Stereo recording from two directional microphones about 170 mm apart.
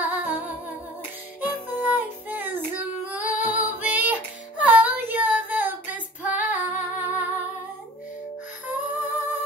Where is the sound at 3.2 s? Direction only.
50° left (ahead or behind).